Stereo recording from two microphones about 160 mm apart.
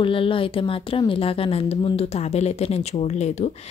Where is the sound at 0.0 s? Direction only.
35° left (ahead or behind).